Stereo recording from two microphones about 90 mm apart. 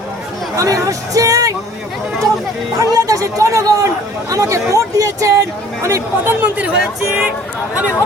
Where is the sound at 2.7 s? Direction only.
40° right (ahead or behind).